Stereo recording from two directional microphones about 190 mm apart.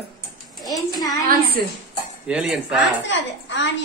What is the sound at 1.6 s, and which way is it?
Speech, 55° right (ahead or behind).